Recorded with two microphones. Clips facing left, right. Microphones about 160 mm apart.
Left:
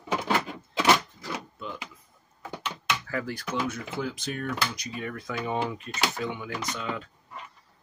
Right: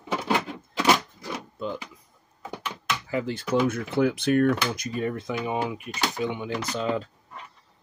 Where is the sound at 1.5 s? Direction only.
35° right (ahead or behind).